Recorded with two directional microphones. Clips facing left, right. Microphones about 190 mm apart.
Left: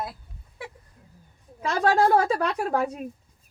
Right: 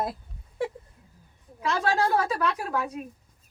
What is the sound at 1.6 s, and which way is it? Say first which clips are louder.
A woman's voice: left 4 dB; 50° left (ahead or behind).